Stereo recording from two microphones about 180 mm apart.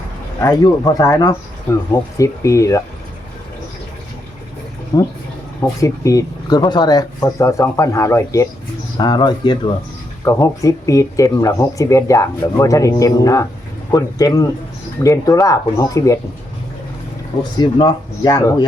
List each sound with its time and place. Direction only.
0.5 s speech: 20° left (ahead or behind)
4.9 s speech: 20° left (ahead or behind)
17.6 s speech: 25° left (ahead or behind)